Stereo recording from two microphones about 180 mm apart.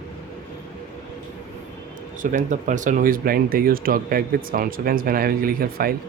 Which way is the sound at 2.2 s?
45° right (ahead or behind).